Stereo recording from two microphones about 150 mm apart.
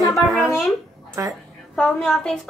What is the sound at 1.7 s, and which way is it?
Speech, 5° left (ahead or behind).